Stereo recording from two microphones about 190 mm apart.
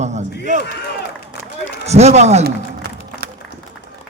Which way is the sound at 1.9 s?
35° right (ahead or behind).